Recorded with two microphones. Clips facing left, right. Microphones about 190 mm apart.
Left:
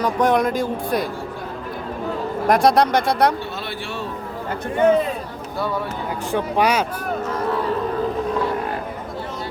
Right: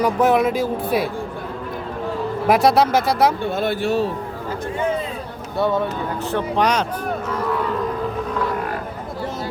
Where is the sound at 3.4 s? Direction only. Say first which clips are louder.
Right 9 dB; 50° right (ahead or behind).